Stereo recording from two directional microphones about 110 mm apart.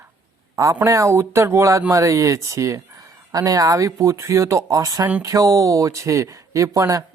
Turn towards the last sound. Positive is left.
turn(degrees=-30)  # may be behind; listen again after turning